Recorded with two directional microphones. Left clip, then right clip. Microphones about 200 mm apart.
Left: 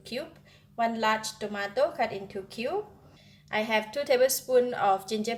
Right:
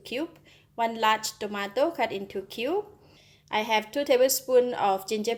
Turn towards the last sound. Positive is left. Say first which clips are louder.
# even
turn(degrees=-35)  # may be behind; listen again after turning